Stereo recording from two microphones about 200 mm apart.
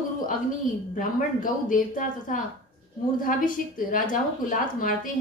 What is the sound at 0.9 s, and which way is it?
A woman's voice, 40° left (ahead or behind).